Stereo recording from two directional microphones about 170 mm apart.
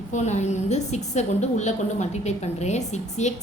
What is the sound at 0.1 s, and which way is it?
A woman's voice, 40° left (ahead or behind).